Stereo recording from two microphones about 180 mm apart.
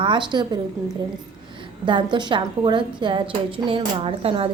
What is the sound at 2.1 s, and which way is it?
A woman's voice, 25° right (ahead or behind).